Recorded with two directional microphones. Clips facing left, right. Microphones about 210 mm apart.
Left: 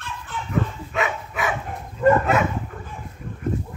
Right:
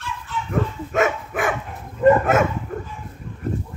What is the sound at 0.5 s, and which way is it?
Dog, 50° right (ahead or behind).